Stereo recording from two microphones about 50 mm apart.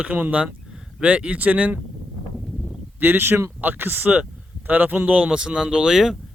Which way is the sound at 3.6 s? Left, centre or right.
Right.